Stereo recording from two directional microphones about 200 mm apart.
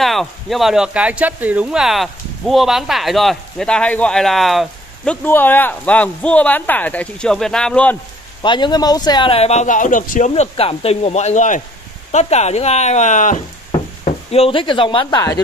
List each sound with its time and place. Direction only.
0.0 s speech: centre (ahead or behind)
8.4 s a man's voice: 25° left (ahead or behind)